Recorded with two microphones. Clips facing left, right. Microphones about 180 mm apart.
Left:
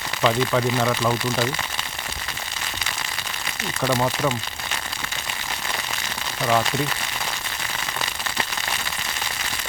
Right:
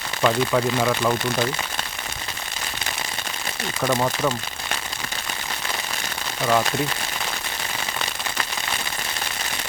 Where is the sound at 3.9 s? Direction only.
Centre (ahead or behind).